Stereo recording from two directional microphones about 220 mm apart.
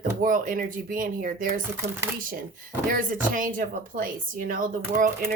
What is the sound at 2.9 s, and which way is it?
A woman's voice, 40° right (ahead or behind).